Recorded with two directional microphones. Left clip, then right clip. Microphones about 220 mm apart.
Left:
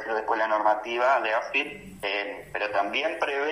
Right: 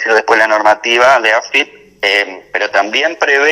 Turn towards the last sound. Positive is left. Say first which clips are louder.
# right 16 dB
turn(degrees=-30)  # may be behind; listen again after turning